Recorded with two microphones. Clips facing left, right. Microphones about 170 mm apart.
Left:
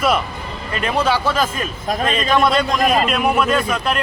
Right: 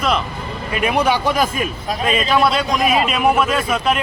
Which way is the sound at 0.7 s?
10° right (ahead or behind).